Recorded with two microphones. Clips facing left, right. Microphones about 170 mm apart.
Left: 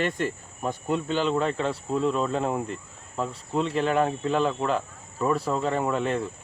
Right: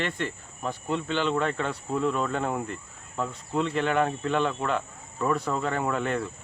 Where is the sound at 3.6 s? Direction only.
35° left (ahead or behind).